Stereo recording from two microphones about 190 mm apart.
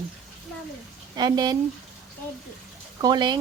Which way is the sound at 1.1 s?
20° right (ahead or behind).